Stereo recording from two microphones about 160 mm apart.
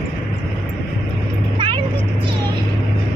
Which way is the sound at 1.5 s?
30° right (ahead or behind).